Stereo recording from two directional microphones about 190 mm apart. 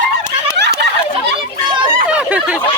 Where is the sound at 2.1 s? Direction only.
5° right (ahead or behind).